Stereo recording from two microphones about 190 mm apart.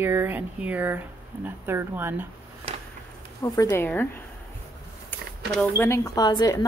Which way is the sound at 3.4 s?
15° left (ahead or behind).